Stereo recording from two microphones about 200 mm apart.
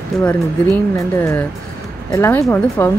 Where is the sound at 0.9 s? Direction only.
15° left (ahead or behind).